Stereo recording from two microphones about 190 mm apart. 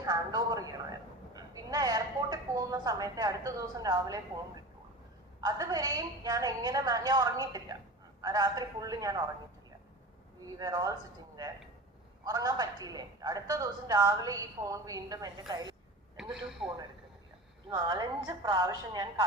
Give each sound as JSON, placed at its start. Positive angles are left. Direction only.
{"t": 0.0, "sound": "a man's voice", "side_deg": -20}
{"t": 5.4, "sound": "a woman's voice", "side_deg": -20}
{"t": 10.4, "sound": "a woman's voice", "side_deg": -20}
{"t": 12.2, "sound": "a woman's voice", "side_deg": -20}
{"t": 16.3, "sound": "a man's voice", "side_deg": -5}
{"t": 17.7, "sound": "a woman's voice", "side_deg": -20}